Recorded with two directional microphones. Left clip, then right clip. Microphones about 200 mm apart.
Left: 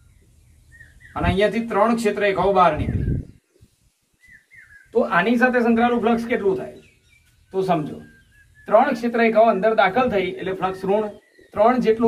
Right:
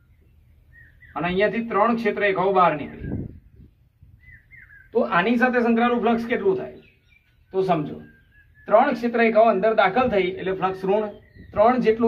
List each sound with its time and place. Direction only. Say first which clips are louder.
1.4 s a man's voice: left 1 dB; 15° right (ahead or behind)
4.9 s a man's voice: left 2 dB; 15° right (ahead or behind)